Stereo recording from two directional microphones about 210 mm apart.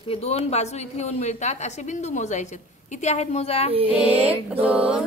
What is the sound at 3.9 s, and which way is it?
Speech, 5° right (ahead or behind).